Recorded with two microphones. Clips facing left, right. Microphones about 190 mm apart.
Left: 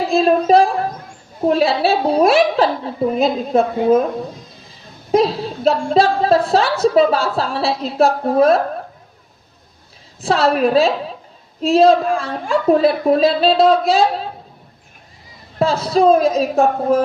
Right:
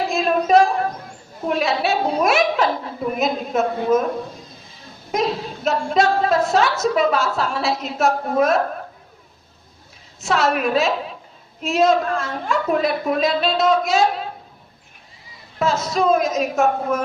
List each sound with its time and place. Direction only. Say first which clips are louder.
0.1 s a sound: left 4 dB; 30° left (ahead or behind)
1.5 s a woman's voice: left 5 dB; 30° left (ahead or behind)
5.1 s a woman's voice: left 7 dB; 30° left (ahead or behind)
10.2 s a woman's voice: left 4 dB; 35° left (ahead or behind)
15.5 s a woman's voice: left 5 dB; 30° left (ahead or behind)